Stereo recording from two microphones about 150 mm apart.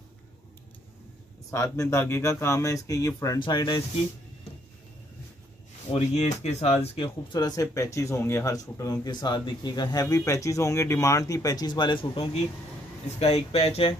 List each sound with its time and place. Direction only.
1.5 s speech: 20° left (ahead or behind)
5.9 s speech: 50° left (ahead or behind)
7.3 s speech: 25° left (ahead or behind); by 13.9 s 40° left (ahead or behind)